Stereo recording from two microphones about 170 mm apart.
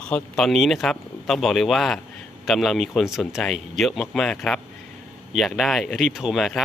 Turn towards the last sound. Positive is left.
turn(degrees=0)  # may be behind; listen again after turning